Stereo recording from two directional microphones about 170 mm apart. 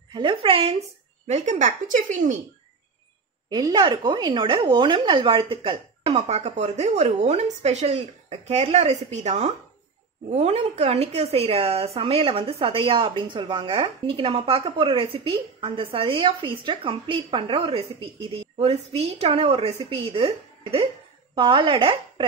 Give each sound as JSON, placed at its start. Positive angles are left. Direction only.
{"t": 0.1, "sound": "a woman's voice", "side_deg": -30}
{"t": 1.2, "sound": "a woman's voice", "side_deg": -45}
{"t": 3.4, "sound": "a woman's voice", "side_deg": -25}